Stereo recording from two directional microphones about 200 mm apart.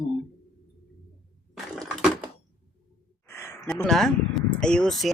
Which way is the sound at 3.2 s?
15° left (ahead or behind).